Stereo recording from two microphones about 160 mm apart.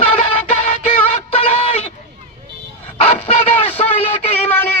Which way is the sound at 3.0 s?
35° left (ahead or behind).